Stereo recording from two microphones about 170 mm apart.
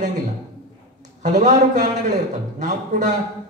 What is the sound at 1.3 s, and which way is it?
A man's voice, 45° right (ahead or behind).